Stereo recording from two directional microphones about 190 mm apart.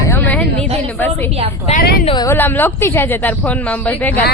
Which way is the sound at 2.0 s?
20° left (ahead or behind).